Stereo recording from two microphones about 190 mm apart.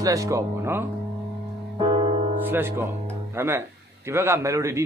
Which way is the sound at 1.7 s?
25° right (ahead or behind).